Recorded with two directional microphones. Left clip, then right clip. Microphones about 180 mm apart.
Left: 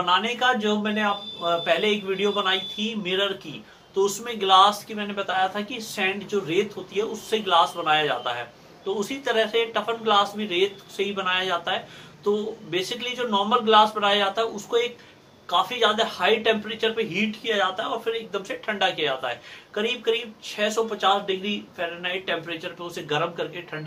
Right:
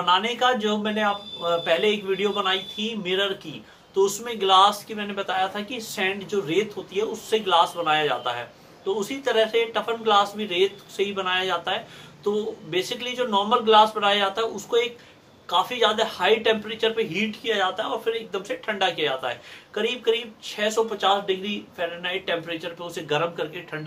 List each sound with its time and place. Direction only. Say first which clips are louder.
0.0 s speech: right 1 dB; 20° right (ahead or behind)